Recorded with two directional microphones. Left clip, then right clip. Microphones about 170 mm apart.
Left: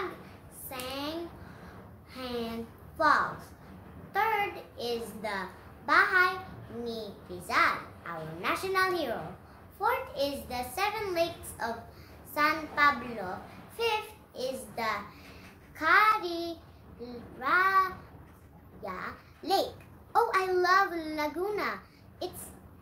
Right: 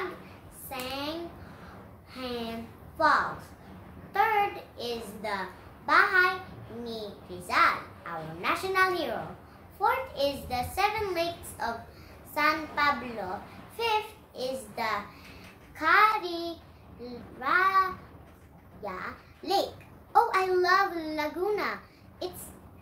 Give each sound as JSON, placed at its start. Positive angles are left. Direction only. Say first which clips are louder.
{"t": 0.7, "sound": "a sound", "louder": "right 2 dB", "side_deg": 10}
{"t": 2.1, "sound": "a sound", "louder": "right 1 dB", "side_deg": 10}
{"t": 3.0, "sound": "a woman's voice", "louder": "right 1 dB", "side_deg": 10}
{"t": 4.1, "sound": "child singing", "louder": "right 3 dB", "side_deg": 10}
{"t": 5.9, "sound": "a child's voice", "louder": "right 2 dB", "side_deg": 10}
{"t": 13.7, "sound": "child singing", "louder": "right 2 dB", "side_deg": 10}
{"t": 15.8, "sound": "a child's voice", "louder": "right 1 dB", "side_deg": 15}